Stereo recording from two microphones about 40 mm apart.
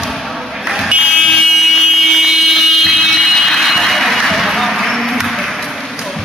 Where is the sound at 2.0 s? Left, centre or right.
Centre.